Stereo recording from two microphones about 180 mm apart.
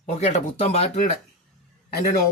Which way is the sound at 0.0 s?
40° left (ahead or behind).